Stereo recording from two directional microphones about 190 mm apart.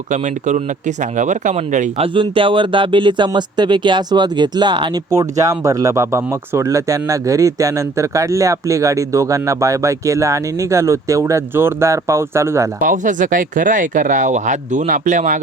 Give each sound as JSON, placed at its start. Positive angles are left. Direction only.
{"t": 0.1, "sound": "speech", "side_deg": -40}
{"t": 2.1, "sound": "speech", "side_deg": -25}
{"t": 12.8, "sound": "speech", "side_deg": -45}